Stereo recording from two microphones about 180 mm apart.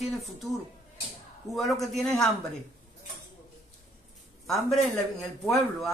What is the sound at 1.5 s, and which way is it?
Speech, 20° right (ahead or behind).